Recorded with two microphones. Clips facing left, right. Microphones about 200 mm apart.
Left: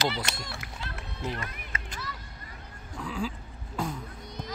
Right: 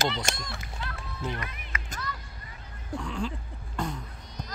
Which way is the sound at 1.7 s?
30° left (ahead or behind).